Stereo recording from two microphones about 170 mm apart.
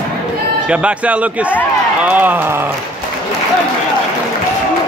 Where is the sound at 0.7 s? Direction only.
5° right (ahead or behind).